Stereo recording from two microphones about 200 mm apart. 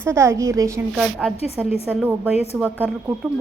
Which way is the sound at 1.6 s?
Centre (ahead or behind).